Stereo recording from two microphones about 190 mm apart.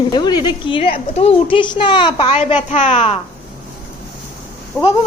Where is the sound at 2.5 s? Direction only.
40° left (ahead or behind).